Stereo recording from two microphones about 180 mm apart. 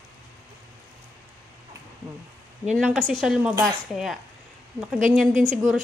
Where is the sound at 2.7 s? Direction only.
Centre (ahead or behind).